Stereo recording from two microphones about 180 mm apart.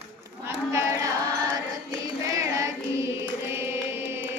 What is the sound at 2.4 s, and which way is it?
Carnatic music, 15° right (ahead or behind).